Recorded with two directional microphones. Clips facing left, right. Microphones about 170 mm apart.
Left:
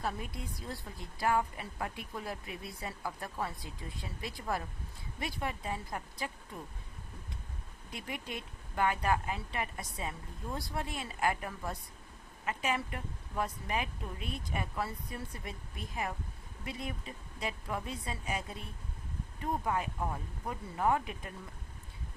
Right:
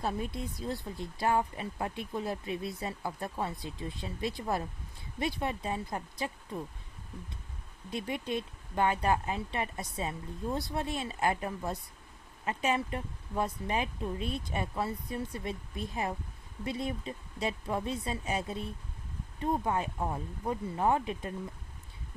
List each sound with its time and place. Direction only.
0.0 s speech: 25° right (ahead or behind)
7.9 s speech: 30° right (ahead or behind)